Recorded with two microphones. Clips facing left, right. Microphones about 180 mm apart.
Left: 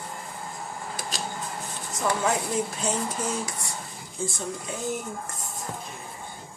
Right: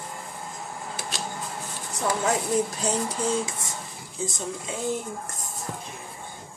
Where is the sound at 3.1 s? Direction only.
30° right (ahead or behind).